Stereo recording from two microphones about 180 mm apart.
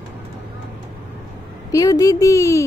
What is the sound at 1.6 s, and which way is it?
Speech, 20° left (ahead or behind).